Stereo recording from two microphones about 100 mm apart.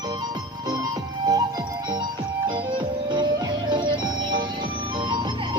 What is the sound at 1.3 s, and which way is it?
Music, 40° right (ahead or behind).